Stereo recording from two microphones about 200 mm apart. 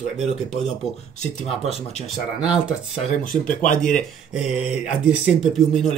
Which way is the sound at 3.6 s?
40° left (ahead or behind).